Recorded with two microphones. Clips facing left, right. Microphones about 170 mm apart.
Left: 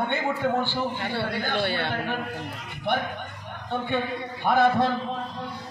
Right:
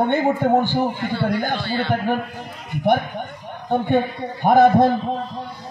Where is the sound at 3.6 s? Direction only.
45° right (ahead or behind).